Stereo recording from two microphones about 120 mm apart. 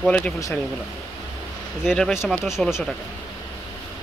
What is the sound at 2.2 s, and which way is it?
Speech, centre (ahead or behind).